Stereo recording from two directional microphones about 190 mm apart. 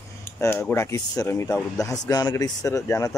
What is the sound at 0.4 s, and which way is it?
Speech, 10° left (ahead or behind).